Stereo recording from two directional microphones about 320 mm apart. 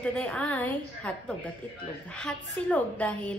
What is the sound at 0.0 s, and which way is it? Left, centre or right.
Speech, centre.